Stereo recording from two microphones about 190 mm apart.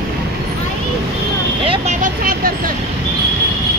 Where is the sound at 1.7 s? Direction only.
40° right (ahead or behind).